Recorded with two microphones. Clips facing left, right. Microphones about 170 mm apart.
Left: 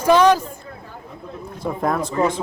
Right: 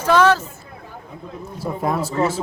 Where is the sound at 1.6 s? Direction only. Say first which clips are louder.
Left 1 dB; 5° right (ahead or behind).